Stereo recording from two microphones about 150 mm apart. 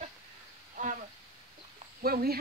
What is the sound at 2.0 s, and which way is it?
Speech, 90° right.